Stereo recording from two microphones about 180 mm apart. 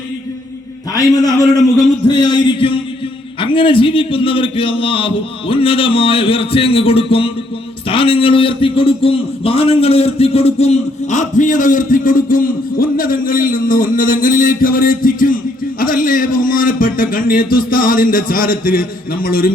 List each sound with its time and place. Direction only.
0.9 s a man's voice: 20° left (ahead or behind); by 19.5 s 55° left (ahead or behind)